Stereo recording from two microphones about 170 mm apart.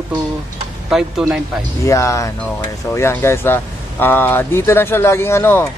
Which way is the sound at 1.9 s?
20° left (ahead or behind).